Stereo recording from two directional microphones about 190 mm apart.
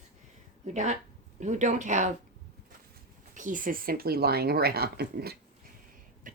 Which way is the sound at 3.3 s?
45° right (ahead or behind).